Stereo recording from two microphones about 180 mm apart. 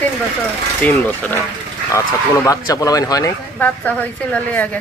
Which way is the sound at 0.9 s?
10° left (ahead or behind).